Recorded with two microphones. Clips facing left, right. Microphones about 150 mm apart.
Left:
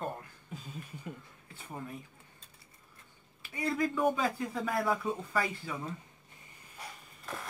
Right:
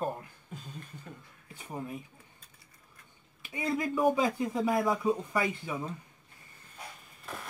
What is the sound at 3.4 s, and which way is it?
A man's voice, 20° right (ahead or behind).